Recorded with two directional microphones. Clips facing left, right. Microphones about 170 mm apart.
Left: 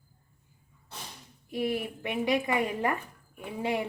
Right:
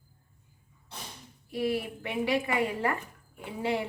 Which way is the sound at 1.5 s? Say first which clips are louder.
Even; 20° left (ahead or behind).